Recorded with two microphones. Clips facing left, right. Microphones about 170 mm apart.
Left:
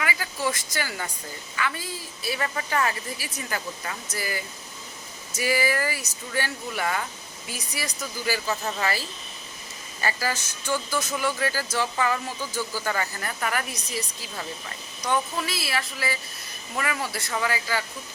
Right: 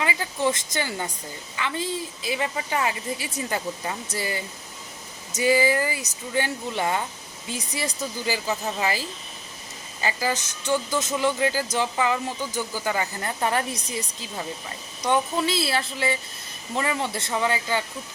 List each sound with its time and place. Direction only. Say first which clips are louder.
0.0 s speech: right 3 dB; 25° right (ahead or behind)